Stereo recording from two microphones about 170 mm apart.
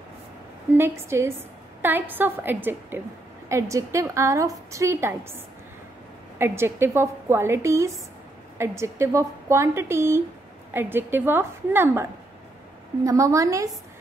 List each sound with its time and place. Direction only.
0.7 s a woman's voice: 15° right (ahead or behind)
6.3 s a woman's voice: 15° right (ahead or behind)